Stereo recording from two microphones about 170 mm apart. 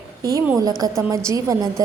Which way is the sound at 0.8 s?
20° right (ahead or behind).